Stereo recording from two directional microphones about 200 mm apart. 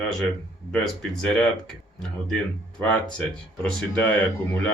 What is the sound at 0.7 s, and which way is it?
Speech, 5° left (ahead or behind).